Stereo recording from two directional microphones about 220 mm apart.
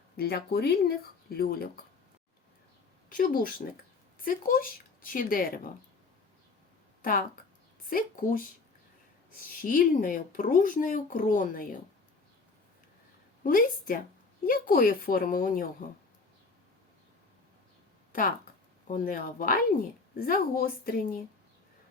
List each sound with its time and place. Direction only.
0.2 s speech: 45° left (ahead or behind)
3.1 s speech: 40° left (ahead or behind)
7.0 s a woman's voice: 40° left (ahead or behind)
9.6 s speech: 40° left (ahead or behind)
13.4 s speech: 40° left (ahead or behind)
18.1 s speech: 40° left (ahead or behind)